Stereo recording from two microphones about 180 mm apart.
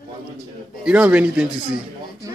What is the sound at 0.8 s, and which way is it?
Speech, 10° right (ahead or behind).